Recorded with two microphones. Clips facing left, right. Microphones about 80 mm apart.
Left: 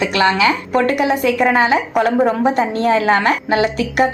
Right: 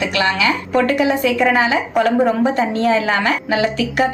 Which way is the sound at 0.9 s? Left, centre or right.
Left.